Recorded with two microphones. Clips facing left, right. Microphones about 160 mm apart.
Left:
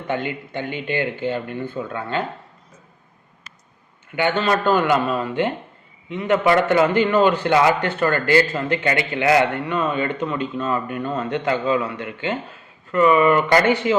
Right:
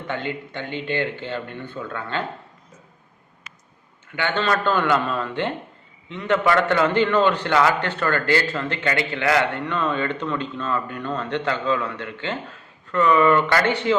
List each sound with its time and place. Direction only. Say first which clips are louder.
0.1 s a man's voice: left 4 dB; 10° left (ahead or behind)
4.1 s a man's voice: left 3 dB; 15° left (ahead or behind)